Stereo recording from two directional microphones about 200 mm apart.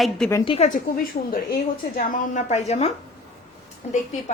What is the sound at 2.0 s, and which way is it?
A woman's voice, 40° left (ahead or behind).